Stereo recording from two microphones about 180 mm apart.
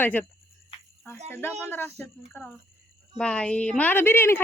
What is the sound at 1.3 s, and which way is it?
A woman's voice, 10° left (ahead or behind).